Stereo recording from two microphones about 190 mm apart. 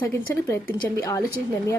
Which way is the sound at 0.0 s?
15° left (ahead or behind).